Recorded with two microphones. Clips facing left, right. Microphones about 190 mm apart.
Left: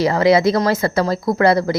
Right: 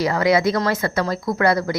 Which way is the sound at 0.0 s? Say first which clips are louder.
Left 4 dB; 30° left (ahead or behind).